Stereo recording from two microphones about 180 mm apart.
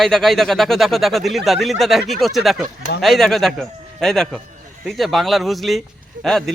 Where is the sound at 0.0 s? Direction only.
Centre (ahead or behind).